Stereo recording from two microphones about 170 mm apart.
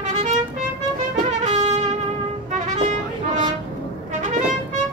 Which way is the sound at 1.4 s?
45° right (ahead or behind).